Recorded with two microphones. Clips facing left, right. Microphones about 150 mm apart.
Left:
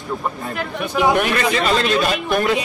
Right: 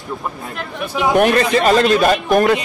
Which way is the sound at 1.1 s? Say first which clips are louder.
Right 5 dB; 40° right (ahead or behind).